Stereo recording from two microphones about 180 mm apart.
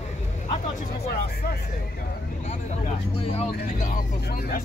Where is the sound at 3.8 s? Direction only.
50° left (ahead or behind).